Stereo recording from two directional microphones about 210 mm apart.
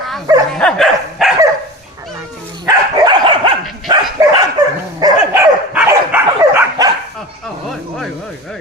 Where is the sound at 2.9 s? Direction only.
20° right (ahead or behind).